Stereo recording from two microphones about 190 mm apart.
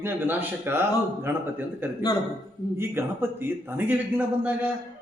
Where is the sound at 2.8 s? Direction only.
10° right (ahead or behind).